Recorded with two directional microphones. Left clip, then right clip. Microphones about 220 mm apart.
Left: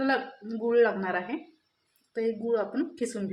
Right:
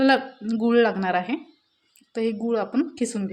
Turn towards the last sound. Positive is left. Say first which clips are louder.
# right 5 dB
turn(degrees=-45)  # may be behind; listen again after turning